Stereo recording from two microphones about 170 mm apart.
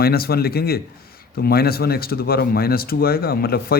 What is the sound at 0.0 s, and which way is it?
Speech, 65° left (ahead or behind).